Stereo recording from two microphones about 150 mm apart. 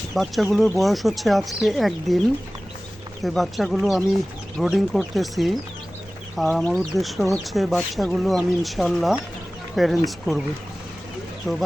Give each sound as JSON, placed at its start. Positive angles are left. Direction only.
{"t": 0.1, "sound": "speech", "side_deg": 0}
{"t": 3.2, "sound": "speech", "side_deg": 0}
{"t": 11.5, "sound": "speech", "side_deg": 20}